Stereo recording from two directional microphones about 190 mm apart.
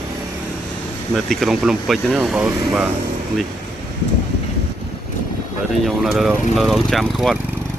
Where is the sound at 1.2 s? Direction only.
Centre (ahead or behind).